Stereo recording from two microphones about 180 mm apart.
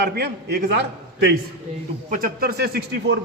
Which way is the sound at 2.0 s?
50° right (ahead or behind).